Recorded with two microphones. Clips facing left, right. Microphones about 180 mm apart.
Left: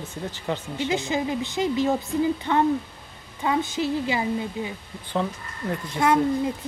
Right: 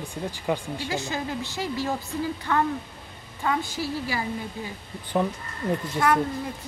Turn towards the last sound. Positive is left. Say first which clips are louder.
# left 3 dB
turn(degrees=20)  # may be behind; listen again after turning